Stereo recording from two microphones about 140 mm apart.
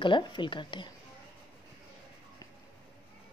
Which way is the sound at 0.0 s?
35° left (ahead or behind).